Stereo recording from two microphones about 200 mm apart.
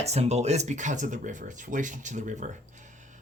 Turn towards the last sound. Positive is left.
turn(degrees=-40)  # may be behind; listen again after turning